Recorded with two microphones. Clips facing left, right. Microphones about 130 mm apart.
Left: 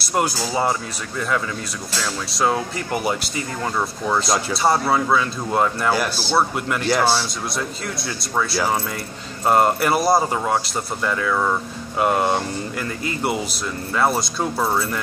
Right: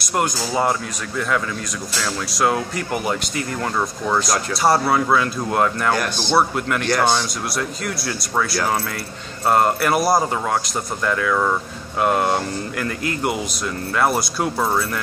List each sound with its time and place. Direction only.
0.1 s speech: centre (ahead or behind)
2.3 s speech: centre (ahead or behind)
4.1 s speech: centre (ahead or behind)
13.9 s speech: 5° right (ahead or behind)